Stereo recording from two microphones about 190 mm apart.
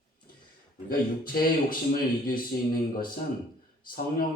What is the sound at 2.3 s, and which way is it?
Speech, 50° left (ahead or behind).